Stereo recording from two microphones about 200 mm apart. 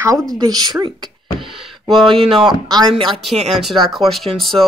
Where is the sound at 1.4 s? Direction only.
Centre (ahead or behind).